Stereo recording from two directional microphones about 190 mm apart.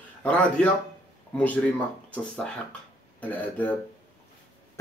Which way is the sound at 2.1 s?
5° left (ahead or behind).